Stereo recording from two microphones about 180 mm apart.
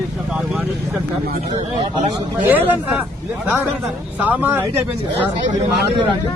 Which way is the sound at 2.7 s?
5° right (ahead or behind).